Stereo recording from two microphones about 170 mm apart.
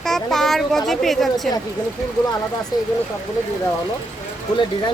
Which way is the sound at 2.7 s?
25° left (ahead or behind).